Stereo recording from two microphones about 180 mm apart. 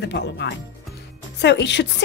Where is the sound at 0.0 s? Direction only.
70° left (ahead or behind).